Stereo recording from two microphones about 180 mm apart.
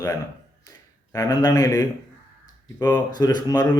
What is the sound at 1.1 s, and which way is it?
Speech, 20° left (ahead or behind).